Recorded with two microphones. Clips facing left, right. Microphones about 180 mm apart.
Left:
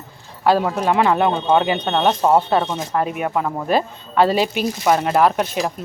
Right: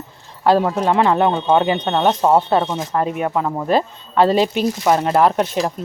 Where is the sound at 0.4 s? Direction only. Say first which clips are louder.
Right 2 dB; 5° left (ahead or behind).